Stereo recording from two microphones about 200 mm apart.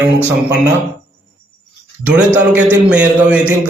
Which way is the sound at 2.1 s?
10° right (ahead or behind).